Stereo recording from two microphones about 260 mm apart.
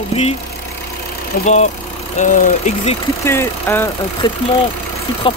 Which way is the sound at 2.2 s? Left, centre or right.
Left.